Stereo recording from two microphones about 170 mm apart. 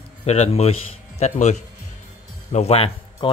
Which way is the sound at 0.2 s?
40° left (ahead or behind).